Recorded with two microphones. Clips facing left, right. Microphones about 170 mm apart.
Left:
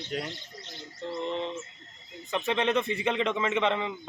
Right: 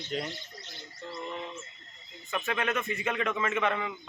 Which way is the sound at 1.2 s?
25° left (ahead or behind).